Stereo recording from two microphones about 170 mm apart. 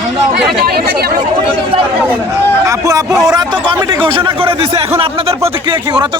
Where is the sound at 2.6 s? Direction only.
20° right (ahead or behind).